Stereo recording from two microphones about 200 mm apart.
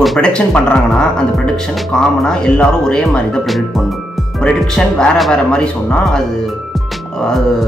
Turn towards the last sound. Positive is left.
turn(degrees=5)  # may be behind; listen again after turning